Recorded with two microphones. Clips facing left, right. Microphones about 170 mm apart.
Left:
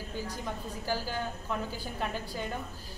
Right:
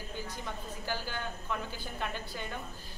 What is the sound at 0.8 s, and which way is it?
A woman's voice, 35° left (ahead or behind).